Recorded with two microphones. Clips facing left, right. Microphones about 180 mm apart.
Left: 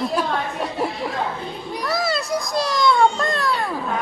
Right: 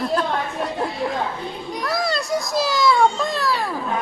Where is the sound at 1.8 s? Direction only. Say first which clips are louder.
Even; centre (ahead or behind).